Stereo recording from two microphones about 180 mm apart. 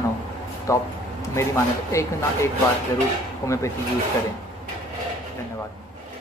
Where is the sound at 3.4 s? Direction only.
15° left (ahead or behind).